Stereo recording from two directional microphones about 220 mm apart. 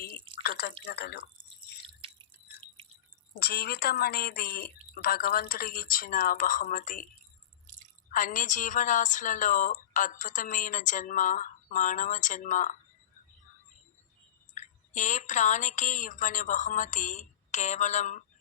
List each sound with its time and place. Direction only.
0.4 s drip: 45° left (ahead or behind)
0.9 s speech: 45° left (ahead or behind)
3.4 s speech: 45° left (ahead or behind)
8.1 s speech: 35° left (ahead or behind)
14.5 s speech: 35° left (ahead or behind)